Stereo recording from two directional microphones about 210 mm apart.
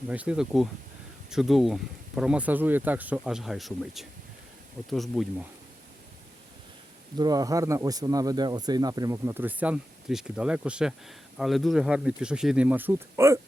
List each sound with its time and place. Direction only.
0.1 s speech: 5° right (ahead or behind)
7.2 s speech: 15° right (ahead or behind)